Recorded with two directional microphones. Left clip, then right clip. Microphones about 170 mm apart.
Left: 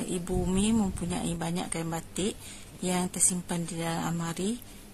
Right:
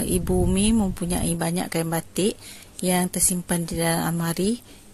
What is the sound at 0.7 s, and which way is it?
Speech, 35° right (ahead or behind).